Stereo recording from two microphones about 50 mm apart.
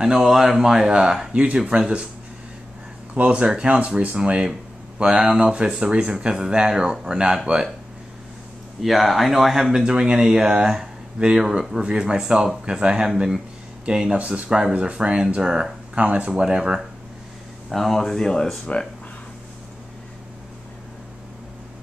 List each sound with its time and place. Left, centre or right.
0.0 s speech: centre
3.2 s speech: right
4.2 s speech: centre
8.8 s speech: centre
9.8 s speech: centre
14.1 s speech: right
16.0 s speech: right
16.3 s speech: centre
17.6 s speech: centre
18.7 s speech: left